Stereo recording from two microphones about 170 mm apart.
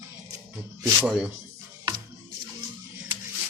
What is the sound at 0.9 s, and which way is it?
Speech, 5° right (ahead or behind).